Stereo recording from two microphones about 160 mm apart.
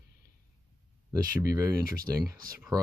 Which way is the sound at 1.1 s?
20° right (ahead or behind).